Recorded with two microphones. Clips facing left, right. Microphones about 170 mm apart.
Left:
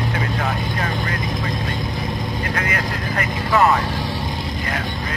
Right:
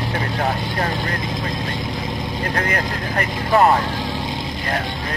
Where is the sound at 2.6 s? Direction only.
40° right (ahead or behind).